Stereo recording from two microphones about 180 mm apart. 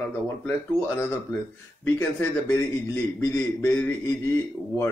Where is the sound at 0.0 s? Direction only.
10° left (ahead or behind).